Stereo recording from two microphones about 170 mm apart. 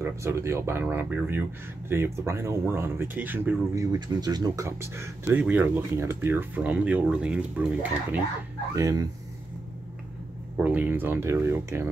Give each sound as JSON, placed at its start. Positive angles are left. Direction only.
{"t": 0.0, "sound": "speech", "side_deg": -15}
{"t": 8.7, "sound": "speech", "side_deg": -20}
{"t": 10.6, "sound": "speech", "side_deg": -10}